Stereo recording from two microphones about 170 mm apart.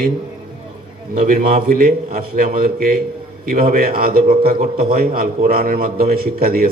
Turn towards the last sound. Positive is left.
turn(degrees=-60)  # may be behind; listen again after turning